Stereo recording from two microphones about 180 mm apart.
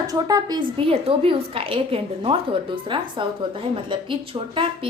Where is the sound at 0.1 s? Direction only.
20° right (ahead or behind).